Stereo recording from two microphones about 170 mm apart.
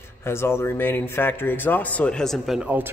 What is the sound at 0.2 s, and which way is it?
A man's voice, 15° left (ahead or behind).